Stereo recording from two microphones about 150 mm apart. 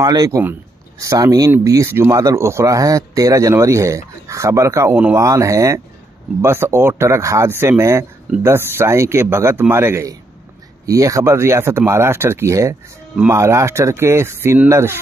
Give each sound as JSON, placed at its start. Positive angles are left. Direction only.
{"t": 0.0, "sound": "speech", "side_deg": -25}